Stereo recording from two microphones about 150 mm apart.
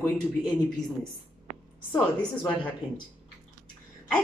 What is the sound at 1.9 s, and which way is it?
Speech, 5° left (ahead or behind).